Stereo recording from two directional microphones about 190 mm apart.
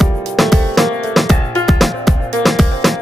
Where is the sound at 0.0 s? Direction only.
Centre (ahead or behind).